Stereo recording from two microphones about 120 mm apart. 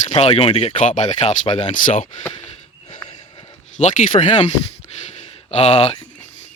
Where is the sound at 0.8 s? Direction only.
80° left.